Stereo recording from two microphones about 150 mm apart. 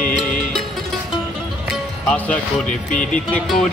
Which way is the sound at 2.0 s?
10° left (ahead or behind).